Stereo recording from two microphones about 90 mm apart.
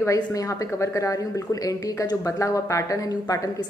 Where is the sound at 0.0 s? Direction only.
40° left (ahead or behind).